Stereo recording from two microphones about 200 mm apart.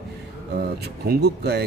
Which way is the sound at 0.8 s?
50° right (ahead or behind).